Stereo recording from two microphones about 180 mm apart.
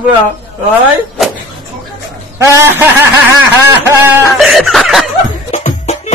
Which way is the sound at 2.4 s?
15° right (ahead or behind).